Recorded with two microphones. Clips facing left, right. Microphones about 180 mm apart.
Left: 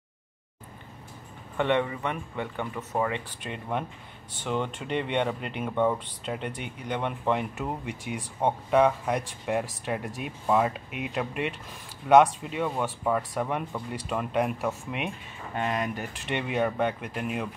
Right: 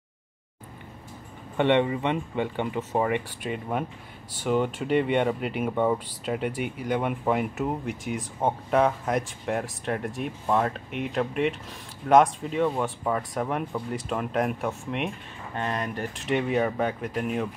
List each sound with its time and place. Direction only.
1.6 s speech: 20° right (ahead or behind)
3.4 s speech: 5° right (ahead or behind)